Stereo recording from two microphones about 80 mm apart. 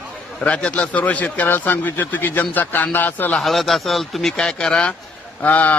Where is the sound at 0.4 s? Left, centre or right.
Centre.